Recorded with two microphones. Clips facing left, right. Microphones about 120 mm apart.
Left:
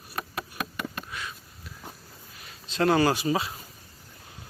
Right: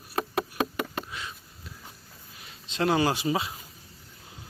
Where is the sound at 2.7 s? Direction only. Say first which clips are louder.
Left 2 dB; 15° right (ahead or behind).